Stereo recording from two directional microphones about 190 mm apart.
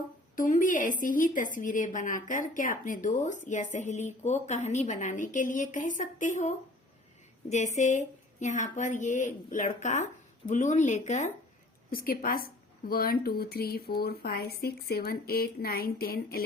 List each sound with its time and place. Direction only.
0.3 s a woman's voice: 45° left (ahead or behind)
7.8 s a woman's voice: 40° left (ahead or behind)
11.9 s a woman's voice: 50° left (ahead or behind)